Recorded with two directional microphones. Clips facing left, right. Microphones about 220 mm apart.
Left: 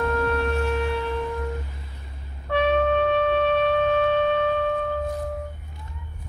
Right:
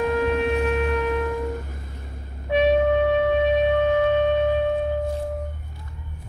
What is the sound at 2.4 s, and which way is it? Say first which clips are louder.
Wind instrument: right 3 dB; 15° right (ahead or behind).